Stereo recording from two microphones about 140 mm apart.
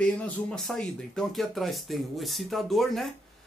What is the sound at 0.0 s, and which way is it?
Speech, 5° left (ahead or behind).